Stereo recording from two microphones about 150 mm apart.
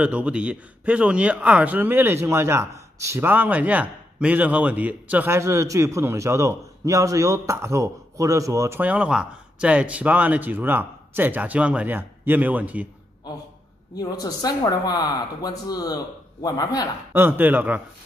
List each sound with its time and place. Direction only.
0.0 s a man's voice: 5° right (ahead or behind)
13.9 s speech: 25° left (ahead or behind)
17.1 s a man's voice: 15° right (ahead or behind)